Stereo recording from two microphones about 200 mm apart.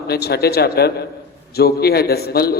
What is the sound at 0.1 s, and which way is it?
A man's voice, 50° left (ahead or behind).